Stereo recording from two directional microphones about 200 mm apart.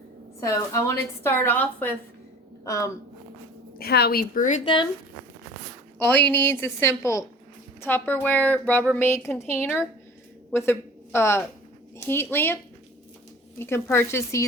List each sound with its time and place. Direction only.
0.3 s speech: 15° left (ahead or behind)
3.8 s a woman's voice: 50° left (ahead or behind); by 4.7 s 35° left (ahead or behind)
6.0 s speech: 10° left (ahead or behind)
13.6 s speech: 10° left (ahead or behind)